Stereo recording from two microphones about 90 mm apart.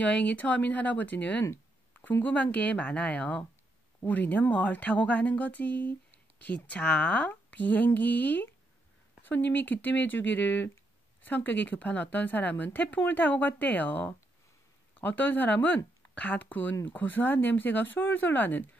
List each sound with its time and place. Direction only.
0.0 s speech: 15° left (ahead or behind)